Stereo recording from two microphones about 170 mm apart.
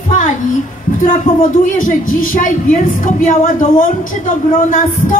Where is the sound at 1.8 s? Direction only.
50° left (ahead or behind).